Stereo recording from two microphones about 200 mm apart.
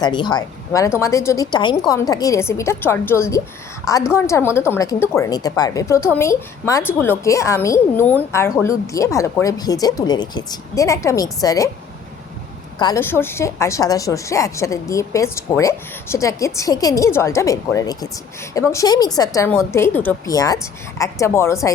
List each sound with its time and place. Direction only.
0.0 s a woman's voice: 20° left (ahead or behind)
12.8 s a woman's voice: 15° left (ahead or behind)